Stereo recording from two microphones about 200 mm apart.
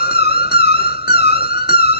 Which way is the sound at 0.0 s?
50° left (ahead or behind).